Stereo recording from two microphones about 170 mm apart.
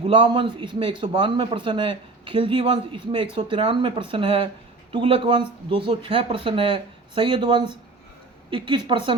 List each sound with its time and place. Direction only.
0.1 s a man's voice: 30° right (ahead or behind)